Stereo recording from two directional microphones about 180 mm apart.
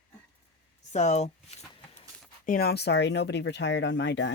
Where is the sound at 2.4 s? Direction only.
55° left (ahead or behind); by 4.3 s 75° left (ahead or behind).